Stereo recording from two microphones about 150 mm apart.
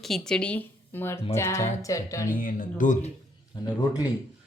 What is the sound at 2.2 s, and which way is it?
Speech, 65° left (ahead or behind).